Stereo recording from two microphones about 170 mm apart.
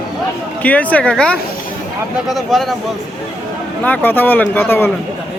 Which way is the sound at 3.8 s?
10° left (ahead or behind).